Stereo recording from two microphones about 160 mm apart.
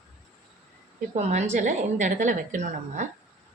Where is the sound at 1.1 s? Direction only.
45° right (ahead or behind).